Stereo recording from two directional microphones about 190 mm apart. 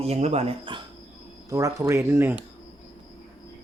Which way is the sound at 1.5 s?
15° right (ahead or behind).